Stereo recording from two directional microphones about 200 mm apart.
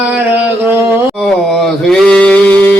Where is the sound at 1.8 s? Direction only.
5° left (ahead or behind).